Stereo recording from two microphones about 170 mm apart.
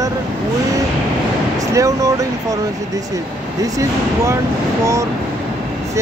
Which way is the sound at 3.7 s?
15° right (ahead or behind).